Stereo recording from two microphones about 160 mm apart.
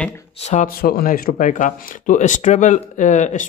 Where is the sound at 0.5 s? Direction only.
45° left (ahead or behind).